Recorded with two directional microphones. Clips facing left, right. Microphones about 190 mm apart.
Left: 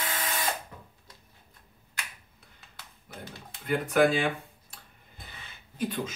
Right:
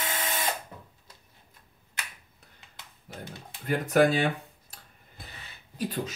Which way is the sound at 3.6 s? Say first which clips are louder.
Right 1 dB; 40° right (ahead or behind).